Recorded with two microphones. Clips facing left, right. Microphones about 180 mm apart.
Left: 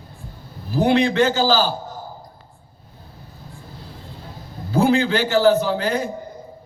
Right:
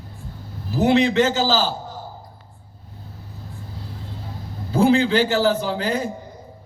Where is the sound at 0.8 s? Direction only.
25° right (ahead or behind).